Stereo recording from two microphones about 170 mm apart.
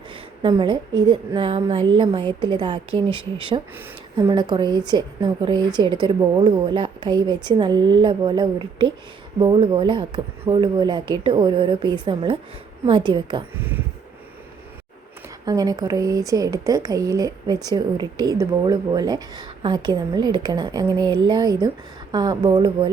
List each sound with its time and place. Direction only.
0.4 s speech: 30° right (ahead or behind)
13.6 s speech: 10° right (ahead or behind)
15.4 s speech: 20° right (ahead or behind)